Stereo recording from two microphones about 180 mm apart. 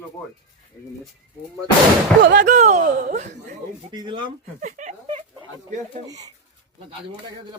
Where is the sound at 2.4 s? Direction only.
40° right (ahead or behind).